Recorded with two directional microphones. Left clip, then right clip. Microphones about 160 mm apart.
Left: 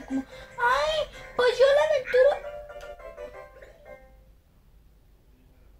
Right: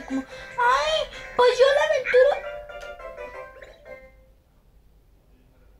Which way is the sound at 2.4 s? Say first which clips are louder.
Right 3 dB; 15° right (ahead or behind).